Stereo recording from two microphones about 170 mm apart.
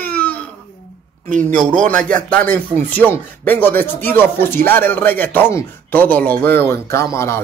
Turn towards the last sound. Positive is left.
turn(degrees=15)  # may be behind; listen again after turning